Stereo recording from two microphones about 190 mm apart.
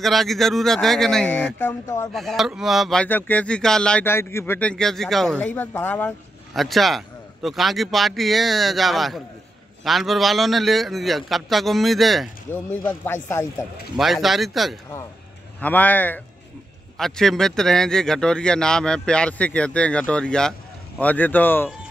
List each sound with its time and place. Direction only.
0.0 s speech: centre (ahead or behind)
2.1 s speech: centre (ahead or behind)
6.5 s speech: centre (ahead or behind)
13.9 s speech: centre (ahead or behind)